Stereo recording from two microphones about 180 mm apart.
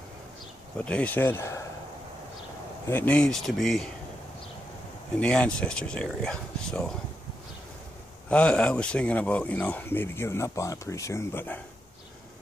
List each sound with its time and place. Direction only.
0.7 s speech: 5° left (ahead or behind)
2.9 s speech: 10° left (ahead or behind)
5.1 s speech: 5° left (ahead or behind)
8.3 s speech: 5° left (ahead or behind)